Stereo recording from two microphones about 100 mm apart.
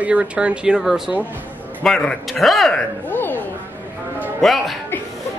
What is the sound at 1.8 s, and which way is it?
A man's voice, 5° left (ahead or behind).